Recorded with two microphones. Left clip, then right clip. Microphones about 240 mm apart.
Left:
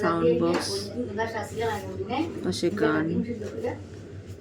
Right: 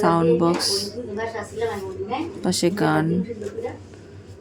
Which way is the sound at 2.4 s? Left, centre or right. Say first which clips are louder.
Right 5 dB; centre.